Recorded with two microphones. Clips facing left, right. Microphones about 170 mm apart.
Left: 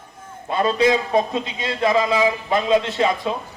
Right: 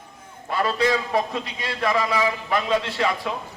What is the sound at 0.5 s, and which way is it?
A man's voice, 20° left (ahead or behind).